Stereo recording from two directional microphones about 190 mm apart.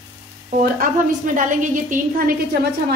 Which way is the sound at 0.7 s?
45° right (ahead or behind).